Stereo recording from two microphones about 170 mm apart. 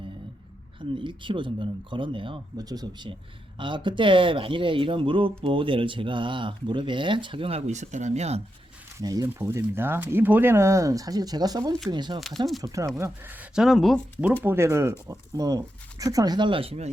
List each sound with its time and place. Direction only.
0.9 s speech: 30° right (ahead or behind)
9.0 s speech: 20° right (ahead or behind); by 14.3 s centre (ahead or behind)
14.4 s speech: 15° right (ahead or behind); by 16.9 s 35° right (ahead or behind)